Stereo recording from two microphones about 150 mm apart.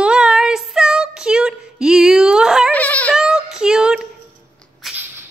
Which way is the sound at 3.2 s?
5° right (ahead or behind).